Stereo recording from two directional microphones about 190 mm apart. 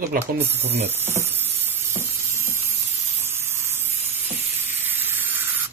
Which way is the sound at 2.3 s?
10° right (ahead or behind).